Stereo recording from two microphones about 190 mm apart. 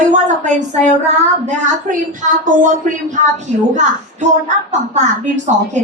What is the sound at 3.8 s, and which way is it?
Speech, 40° right (ahead or behind).